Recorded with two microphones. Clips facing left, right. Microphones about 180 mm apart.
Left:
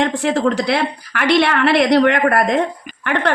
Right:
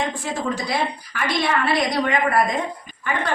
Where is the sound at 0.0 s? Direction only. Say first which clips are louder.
Left 9 dB; 75° left (ahead or behind).